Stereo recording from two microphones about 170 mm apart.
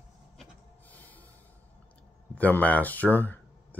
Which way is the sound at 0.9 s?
10° left (ahead or behind).